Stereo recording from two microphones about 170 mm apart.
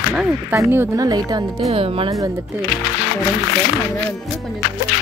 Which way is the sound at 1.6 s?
35° right (ahead or behind).